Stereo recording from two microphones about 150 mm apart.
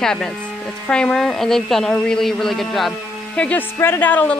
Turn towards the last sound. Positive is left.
turn(degrees=10)  # may be behind; listen again after turning